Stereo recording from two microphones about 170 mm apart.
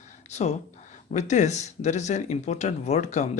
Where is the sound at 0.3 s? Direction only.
40° left (ahead or behind).